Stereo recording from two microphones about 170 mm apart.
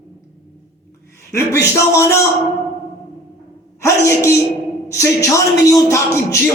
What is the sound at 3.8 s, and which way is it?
A man's voice, 15° left (ahead or behind).